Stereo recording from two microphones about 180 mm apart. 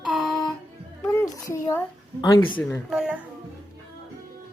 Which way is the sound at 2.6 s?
10° left (ahead or behind).